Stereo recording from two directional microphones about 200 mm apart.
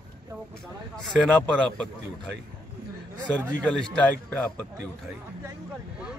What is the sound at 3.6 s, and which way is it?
Speech, 5° left (ahead or behind).